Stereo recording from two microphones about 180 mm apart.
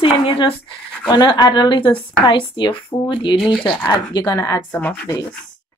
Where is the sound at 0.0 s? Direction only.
30° left (ahead or behind).